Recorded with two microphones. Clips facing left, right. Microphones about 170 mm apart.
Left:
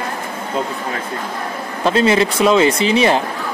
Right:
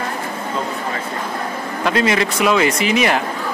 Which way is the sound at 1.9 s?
30° left (ahead or behind).